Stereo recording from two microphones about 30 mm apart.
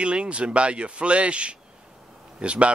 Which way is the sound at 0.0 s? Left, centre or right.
Right.